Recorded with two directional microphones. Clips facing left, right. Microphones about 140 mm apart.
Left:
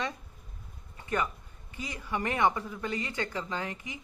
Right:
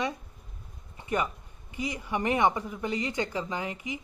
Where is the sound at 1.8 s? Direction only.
15° right (ahead or behind).